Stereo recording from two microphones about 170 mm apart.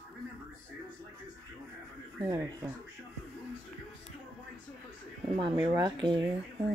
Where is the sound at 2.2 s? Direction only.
15° right (ahead or behind).